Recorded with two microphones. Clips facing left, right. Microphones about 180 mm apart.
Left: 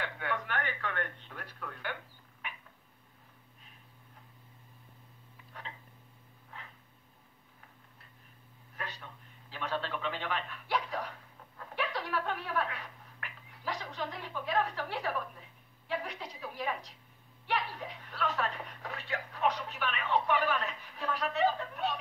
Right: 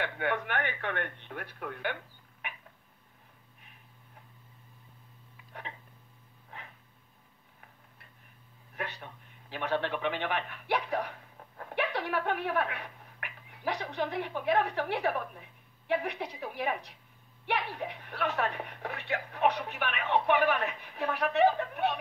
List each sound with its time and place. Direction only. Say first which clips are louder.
0.0 s speech: right 5 dB; 65° right (ahead or behind)
8.7 s a man's voice: right 4 dB; 65° right (ahead or behind)